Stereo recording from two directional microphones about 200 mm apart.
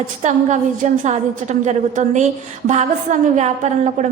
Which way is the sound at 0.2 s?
35° right (ahead or behind).